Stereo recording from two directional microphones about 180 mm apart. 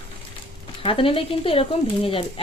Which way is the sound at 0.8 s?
30° left (ahead or behind).